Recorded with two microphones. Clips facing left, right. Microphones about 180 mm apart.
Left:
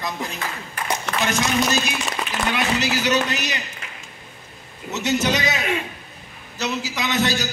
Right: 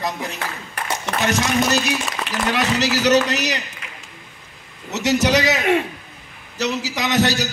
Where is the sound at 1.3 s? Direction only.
70° right (ahead or behind).